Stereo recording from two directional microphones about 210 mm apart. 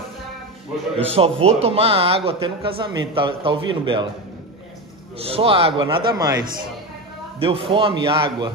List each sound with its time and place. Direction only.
0.9 s a man's voice: 30° right (ahead or behind)
5.2 s a man's voice: 25° right (ahead or behind)
7.3 s a man's voice: 25° right (ahead or behind)